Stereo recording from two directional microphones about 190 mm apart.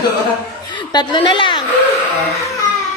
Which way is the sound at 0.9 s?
25° left (ahead or behind).